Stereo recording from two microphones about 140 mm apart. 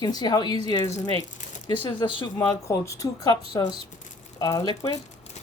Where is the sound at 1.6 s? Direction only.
35° left (ahead or behind).